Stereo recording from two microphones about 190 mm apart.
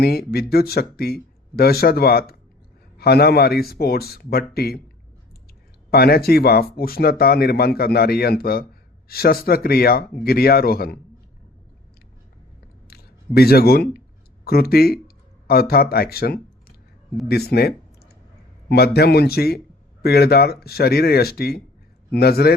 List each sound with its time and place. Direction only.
0.0 s speech: 55° left (ahead or behind)
5.9 s speech: 55° left (ahead or behind)
12.9 s a sound: 55° left (ahead or behind)
14.4 s speech: 55° left (ahead or behind)
15.0 s a sound: 55° left (ahead or behind)
17.2 s speech: 55° left (ahead or behind)